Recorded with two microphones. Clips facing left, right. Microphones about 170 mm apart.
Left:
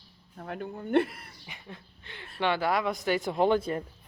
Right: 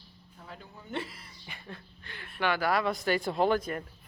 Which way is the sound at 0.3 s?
60° left (ahead or behind).